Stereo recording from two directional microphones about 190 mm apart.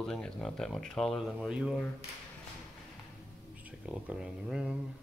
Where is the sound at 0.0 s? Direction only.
5° left (ahead or behind).